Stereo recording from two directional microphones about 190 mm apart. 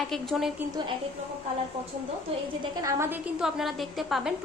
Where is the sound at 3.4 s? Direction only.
Centre (ahead or behind).